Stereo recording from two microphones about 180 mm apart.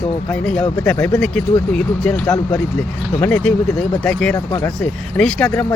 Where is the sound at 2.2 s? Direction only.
20° left (ahead or behind).